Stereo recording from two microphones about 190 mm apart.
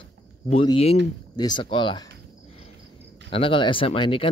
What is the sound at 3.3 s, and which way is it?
Speech, 30° left (ahead or behind).